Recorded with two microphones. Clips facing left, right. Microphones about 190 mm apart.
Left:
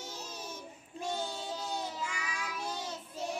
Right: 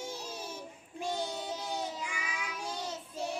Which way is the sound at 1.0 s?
15° right (ahead or behind).